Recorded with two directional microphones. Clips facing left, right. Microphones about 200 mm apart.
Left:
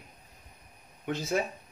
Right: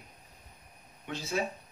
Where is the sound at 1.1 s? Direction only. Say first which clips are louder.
Left 5 dB; 50° left (ahead or behind).